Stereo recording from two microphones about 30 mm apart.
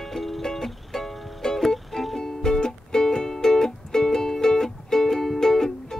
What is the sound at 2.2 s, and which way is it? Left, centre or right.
Music, left.